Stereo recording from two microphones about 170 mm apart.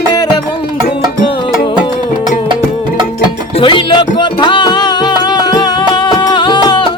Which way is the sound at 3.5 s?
30° left (ahead or behind).